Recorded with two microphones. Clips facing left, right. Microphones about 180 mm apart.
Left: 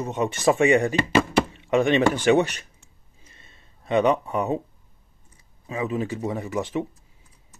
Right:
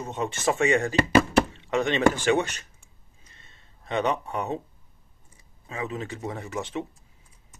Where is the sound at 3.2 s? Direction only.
25° left (ahead or behind).